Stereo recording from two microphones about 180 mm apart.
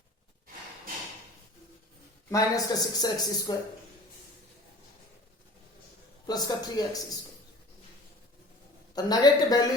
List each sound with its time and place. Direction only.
2.3 s speech: 20° left (ahead or behind)
6.2 s speech: 20° left (ahead or behind)
9.0 s speech: 20° left (ahead or behind)